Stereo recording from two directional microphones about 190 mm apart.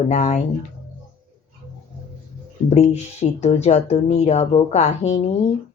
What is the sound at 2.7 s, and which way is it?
Speech, 35° left (ahead or behind).